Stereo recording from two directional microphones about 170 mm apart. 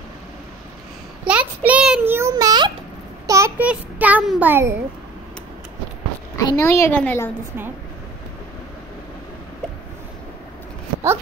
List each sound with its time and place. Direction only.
1.2 s child singing: 10° right (ahead or behind)
2.1 s a sound: 20° right (ahead or behind)
3.3 s a child's voice: 15° right (ahead or behind)
6.3 s a woman's voice: 20° left (ahead or behind)